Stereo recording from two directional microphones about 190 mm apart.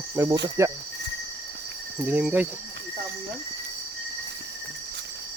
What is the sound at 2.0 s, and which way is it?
Speech, 5° right (ahead or behind).